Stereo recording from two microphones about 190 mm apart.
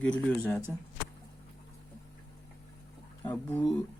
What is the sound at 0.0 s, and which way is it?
Speech, 5° left (ahead or behind).